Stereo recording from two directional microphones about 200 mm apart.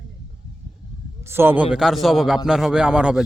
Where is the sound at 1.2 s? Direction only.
10° right (ahead or behind).